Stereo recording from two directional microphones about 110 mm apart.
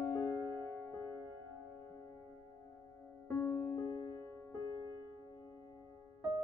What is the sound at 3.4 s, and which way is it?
Music, 20° left (ahead or behind).